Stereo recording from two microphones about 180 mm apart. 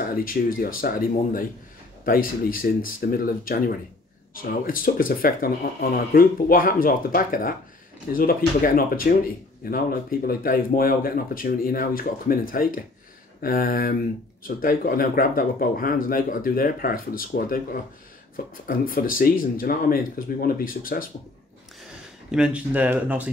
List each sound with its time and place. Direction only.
0.0 s speech: 50° left (ahead or behind)
22.3 s speech: 5° right (ahead or behind)